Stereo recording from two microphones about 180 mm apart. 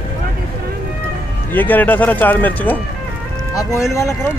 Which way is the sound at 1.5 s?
10° left (ahead or behind).